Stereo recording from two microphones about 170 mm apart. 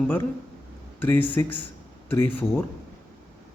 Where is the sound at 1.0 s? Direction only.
10° left (ahead or behind).